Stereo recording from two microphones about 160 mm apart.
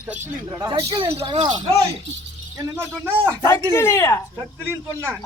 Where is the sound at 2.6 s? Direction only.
15° right (ahead or behind).